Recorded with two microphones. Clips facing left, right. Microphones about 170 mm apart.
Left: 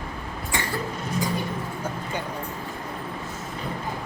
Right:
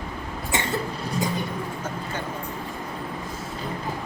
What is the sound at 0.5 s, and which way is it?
Cough, 20° right (ahead or behind).